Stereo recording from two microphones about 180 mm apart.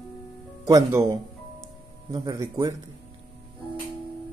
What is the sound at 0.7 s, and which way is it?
Speech, 15° right (ahead or behind).